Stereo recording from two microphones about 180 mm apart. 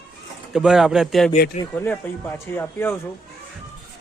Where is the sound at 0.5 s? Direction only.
5° right (ahead or behind).